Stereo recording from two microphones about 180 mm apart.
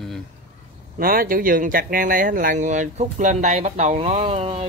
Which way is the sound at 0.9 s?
50° right (ahead or behind).